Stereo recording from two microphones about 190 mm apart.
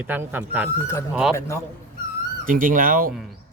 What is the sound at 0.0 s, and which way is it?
A man's voice, 10° right (ahead or behind).